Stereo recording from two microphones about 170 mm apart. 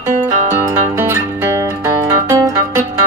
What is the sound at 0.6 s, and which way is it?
Music, 15° right (ahead or behind).